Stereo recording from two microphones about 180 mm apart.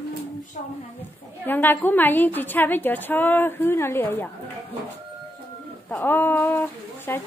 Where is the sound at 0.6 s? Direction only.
45° left (ahead or behind).